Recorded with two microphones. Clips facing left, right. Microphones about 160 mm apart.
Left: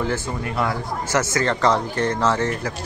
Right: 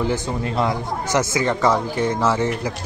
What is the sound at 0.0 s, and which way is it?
Speech, 20° right (ahead or behind).